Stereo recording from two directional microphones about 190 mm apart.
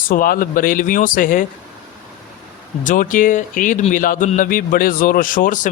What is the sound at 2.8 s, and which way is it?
Speech, 45° left (ahead or behind).